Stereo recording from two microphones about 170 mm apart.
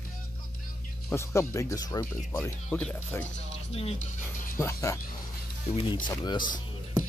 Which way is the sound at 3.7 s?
35° left (ahead or behind).